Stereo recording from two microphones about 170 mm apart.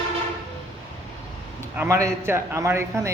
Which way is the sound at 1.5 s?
10° right (ahead or behind).